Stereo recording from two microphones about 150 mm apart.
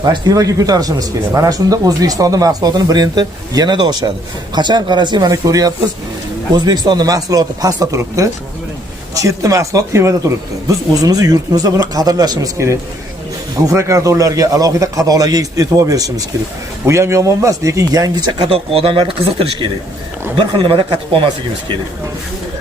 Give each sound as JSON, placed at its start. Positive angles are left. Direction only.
{"t": 0.0, "sound": "speech", "side_deg": -25}